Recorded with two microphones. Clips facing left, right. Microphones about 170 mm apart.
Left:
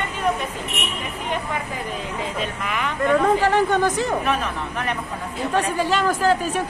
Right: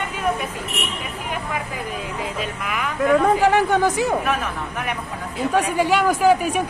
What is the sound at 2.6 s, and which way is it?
Speech, 5° right (ahead or behind).